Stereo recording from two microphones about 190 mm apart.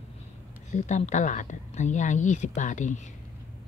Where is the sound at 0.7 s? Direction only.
40° left (ahead or behind).